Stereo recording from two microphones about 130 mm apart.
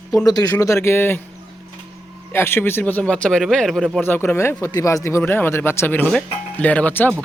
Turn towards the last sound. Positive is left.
turn(degrees=15)  # may be behind; listen again after turning